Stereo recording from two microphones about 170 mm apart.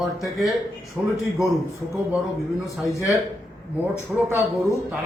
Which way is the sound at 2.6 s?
20° left (ahead or behind).